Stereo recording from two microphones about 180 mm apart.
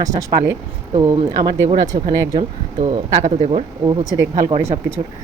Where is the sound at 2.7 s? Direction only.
35° right (ahead or behind).